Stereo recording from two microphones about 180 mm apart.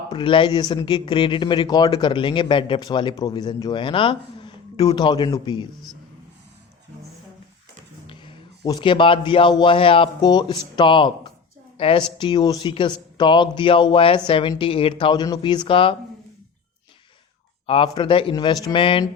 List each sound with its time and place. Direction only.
0.1 s speech: 30° left (ahead or behind)
8.0 s a man's voice: 30° left (ahead or behind)
17.7 s speech: 30° left (ahead or behind)